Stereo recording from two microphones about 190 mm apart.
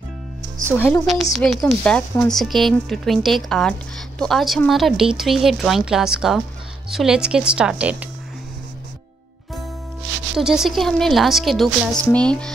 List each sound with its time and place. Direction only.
0.7 s a woman's voice: 15° left (ahead or behind)
1.3 s speech: centre (ahead or behind)
10.3 s speech: centre (ahead or behind)